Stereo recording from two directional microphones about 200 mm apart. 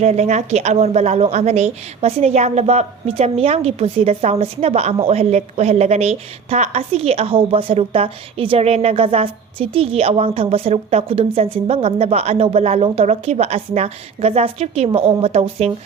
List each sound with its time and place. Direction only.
0.0 s a woman's voice: 35° right (ahead or behind)